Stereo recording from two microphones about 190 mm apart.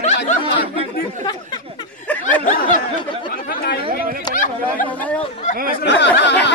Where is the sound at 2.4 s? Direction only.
45° left (ahead or behind).